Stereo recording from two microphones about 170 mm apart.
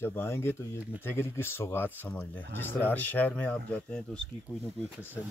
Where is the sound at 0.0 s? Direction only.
15° left (ahead or behind).